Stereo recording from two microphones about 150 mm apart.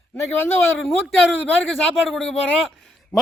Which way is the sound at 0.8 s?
Centre (ahead or behind).